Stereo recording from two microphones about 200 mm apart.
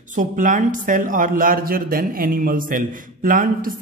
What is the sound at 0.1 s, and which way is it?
Speech, 40° right (ahead or behind).